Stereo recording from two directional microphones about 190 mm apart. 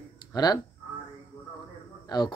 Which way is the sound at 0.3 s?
20° left (ahead or behind).